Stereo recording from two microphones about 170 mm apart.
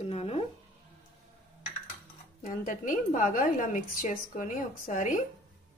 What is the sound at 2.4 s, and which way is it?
A woman's voice, 55° left (ahead or behind).